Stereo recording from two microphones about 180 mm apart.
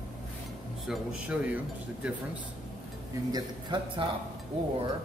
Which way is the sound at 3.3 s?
25° right (ahead or behind).